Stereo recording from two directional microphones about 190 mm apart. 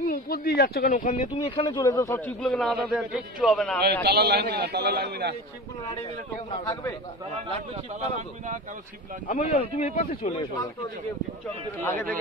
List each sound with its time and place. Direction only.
0.0 s speech: 50° left (ahead or behind); by 3.8 s 5° left (ahead or behind)
3.8 s a man's voice: 60° right (ahead or behind)
6.6 s speech: 20° left (ahead or behind)
7.7 s speech: 35° right (ahead or behind)
9.3 s speech: 35° left (ahead or behind)